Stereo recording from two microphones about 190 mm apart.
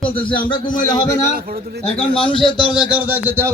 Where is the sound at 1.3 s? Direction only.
50° right (ahead or behind).